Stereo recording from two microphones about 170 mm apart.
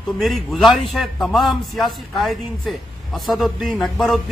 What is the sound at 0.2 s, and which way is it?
A man's voice, centre (ahead or behind).